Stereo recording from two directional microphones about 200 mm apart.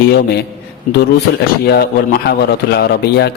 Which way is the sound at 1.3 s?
45° left (ahead or behind).